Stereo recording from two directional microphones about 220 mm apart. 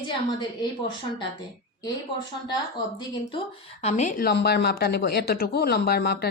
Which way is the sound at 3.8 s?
30° left (ahead or behind).